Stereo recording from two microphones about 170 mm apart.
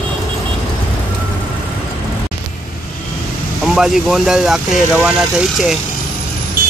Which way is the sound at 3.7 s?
Centre (ahead or behind).